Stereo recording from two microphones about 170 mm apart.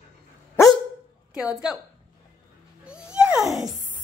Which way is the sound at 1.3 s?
5° right (ahead or behind).